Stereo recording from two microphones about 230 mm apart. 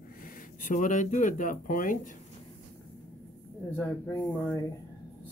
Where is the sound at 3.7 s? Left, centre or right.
Centre.